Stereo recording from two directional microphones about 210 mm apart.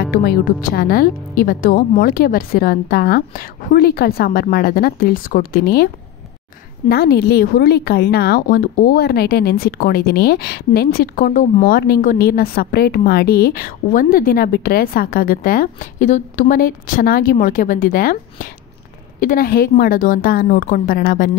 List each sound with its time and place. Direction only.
0.1 s a woman's voice: 45° left (ahead or behind)
6.9 s a woman's voice: 50° left (ahead or behind)